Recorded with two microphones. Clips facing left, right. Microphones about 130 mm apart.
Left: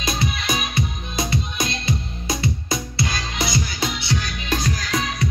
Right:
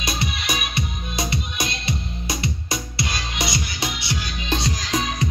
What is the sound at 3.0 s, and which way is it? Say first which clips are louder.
Music: even; 20° right (ahead or behind).